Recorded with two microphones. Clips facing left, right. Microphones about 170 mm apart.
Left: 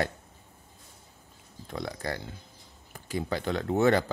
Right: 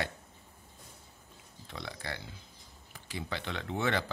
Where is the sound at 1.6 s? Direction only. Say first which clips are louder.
Left 8 dB; 45° left (ahead or behind).